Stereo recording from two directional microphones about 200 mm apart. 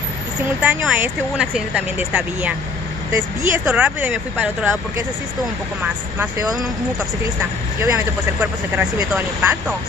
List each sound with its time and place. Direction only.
0.6 s speech: 5° right (ahead or behind)
6.1 s speech: 15° right (ahead or behind)
7.8 s speech: 15° right (ahead or behind)